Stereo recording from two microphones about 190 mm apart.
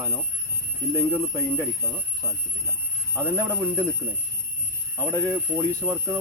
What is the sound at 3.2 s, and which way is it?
Speech, 15° right (ahead or behind).